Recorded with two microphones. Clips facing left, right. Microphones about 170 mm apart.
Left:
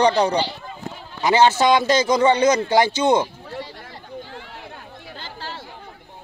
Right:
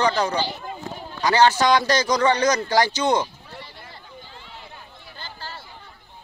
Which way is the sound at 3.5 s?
90° left.